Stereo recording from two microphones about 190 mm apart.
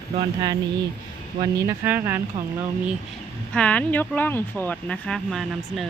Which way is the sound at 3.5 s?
5° left (ahead or behind).